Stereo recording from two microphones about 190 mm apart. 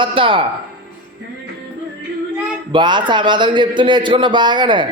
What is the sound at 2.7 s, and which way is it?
Speech, 25° right (ahead or behind).